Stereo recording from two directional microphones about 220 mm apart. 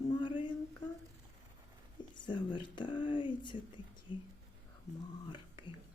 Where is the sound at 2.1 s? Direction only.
20° left (ahead or behind).